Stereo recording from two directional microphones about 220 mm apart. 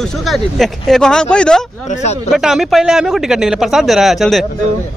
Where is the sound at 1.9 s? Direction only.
30° left (ahead or behind).